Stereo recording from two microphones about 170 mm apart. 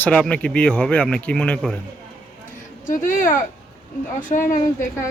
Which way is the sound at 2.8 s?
50° left (ahead or behind).